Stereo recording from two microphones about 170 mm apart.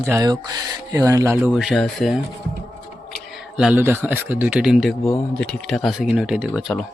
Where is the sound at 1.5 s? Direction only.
Centre (ahead or behind).